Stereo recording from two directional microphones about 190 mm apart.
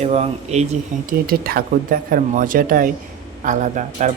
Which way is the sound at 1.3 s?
50° right (ahead or behind).